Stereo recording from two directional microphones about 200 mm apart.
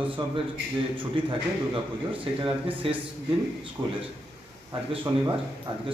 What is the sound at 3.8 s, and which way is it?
A man's voice, 15° right (ahead or behind).